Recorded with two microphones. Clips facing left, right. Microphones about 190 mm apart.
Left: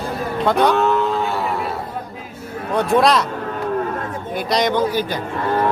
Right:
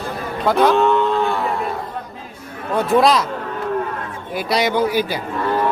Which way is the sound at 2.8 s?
Centre (ahead or behind).